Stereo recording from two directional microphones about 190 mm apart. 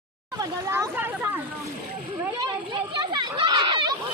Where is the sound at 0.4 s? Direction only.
10° right (ahead or behind).